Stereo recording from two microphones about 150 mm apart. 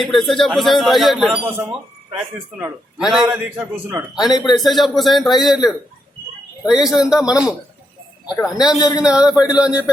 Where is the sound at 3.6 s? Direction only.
20° right (ahead or behind).